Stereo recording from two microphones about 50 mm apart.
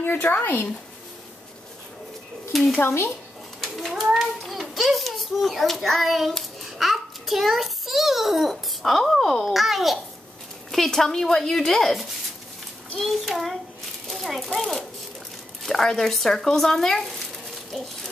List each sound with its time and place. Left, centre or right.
0.0 s speech: left
2.5 s speech: centre
2.8 s speech: left
3.6 s children playing: centre
3.9 s a sound: centre
4.2 s hands: centre
5.9 s speech: centre
6.3 s child singing: centre
8.9 s a woman's voice: centre